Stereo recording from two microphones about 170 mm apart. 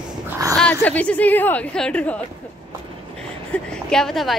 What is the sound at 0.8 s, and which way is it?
A woman's voice, 10° left (ahead or behind).